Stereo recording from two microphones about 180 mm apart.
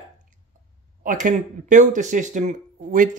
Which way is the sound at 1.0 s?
45° right (ahead or behind).